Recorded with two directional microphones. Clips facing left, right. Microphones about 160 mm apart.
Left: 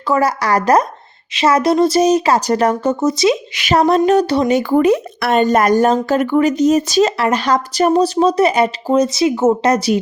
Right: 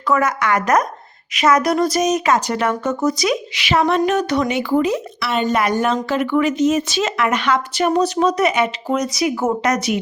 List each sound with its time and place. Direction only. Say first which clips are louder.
0.1 s speech: left 3 dB; 35° left (ahead or behind)
3.0 s speech: left 4 dB; 25° left (ahead or behind)
3.5 s speech: left 4 dB; 45° left (ahead or behind)
4.8 s speech: left 6 dB; 55° left (ahead or behind); by 10.0 s 30° left (ahead or behind)